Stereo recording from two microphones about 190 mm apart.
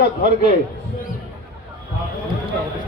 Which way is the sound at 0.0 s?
55° left (ahead or behind).